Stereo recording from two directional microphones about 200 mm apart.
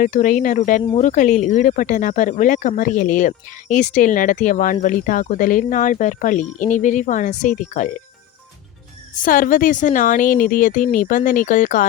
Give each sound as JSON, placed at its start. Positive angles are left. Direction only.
{"t": 0.0, "sound": "speech", "side_deg": 40}
{"t": 9.1, "sound": "speech", "side_deg": 45}